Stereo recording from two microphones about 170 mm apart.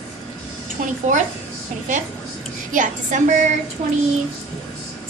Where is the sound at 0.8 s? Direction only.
45° right (ahead or behind).